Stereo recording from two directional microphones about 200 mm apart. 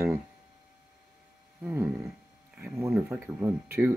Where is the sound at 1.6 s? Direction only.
5° right (ahead or behind).